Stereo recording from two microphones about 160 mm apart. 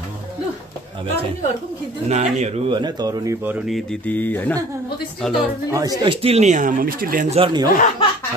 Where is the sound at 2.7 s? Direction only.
25° right (ahead or behind).